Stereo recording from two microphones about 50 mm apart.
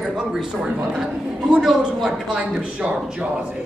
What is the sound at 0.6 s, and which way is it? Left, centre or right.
A man's voice, centre.